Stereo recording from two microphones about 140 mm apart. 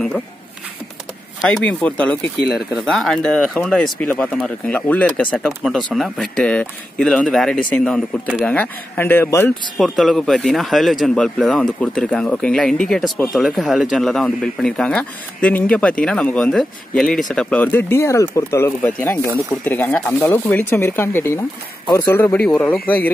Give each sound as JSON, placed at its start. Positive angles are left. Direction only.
{"t": 1.6, "sound": "speech", "side_deg": 10}
{"t": 9.8, "sound": "speech", "side_deg": 0}